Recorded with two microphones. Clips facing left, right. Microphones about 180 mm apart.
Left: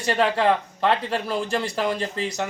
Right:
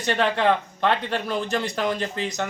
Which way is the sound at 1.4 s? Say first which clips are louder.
Even; 30° left (ahead or behind).